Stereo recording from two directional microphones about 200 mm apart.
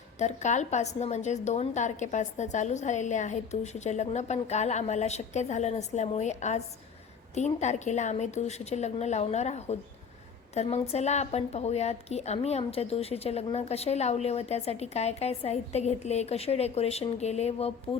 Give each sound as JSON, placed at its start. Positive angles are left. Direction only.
{"t": 0.2, "sound": "a woman's voice", "side_deg": 35}
{"t": 17.9, "sound": "speech", "side_deg": 20}